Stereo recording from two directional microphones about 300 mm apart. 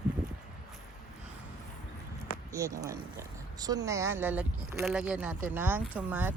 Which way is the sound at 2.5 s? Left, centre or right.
Centre.